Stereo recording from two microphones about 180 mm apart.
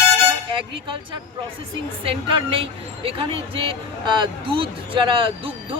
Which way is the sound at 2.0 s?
30° right (ahead or behind).